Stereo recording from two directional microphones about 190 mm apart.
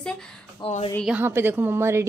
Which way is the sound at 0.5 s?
30° left (ahead or behind).